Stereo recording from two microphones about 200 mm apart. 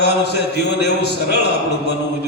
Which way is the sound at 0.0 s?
55° left (ahead or behind).